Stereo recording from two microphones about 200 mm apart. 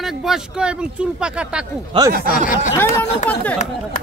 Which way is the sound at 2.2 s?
45° left (ahead or behind).